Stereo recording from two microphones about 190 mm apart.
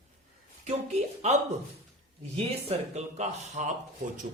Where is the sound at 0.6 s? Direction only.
35° right (ahead or behind).